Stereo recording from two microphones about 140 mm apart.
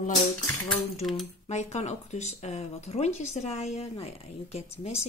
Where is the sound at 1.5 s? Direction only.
55° left (ahead or behind).